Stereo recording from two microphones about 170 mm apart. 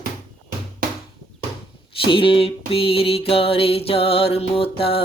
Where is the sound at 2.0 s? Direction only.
30° left (ahead or behind).